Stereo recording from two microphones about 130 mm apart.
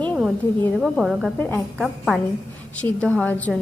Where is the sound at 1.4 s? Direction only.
15° left (ahead or behind).